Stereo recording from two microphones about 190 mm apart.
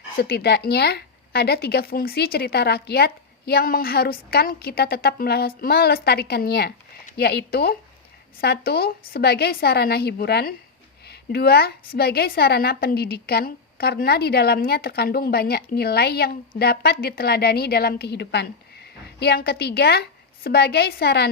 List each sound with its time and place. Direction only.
0.2 s speech: 55° left (ahead or behind)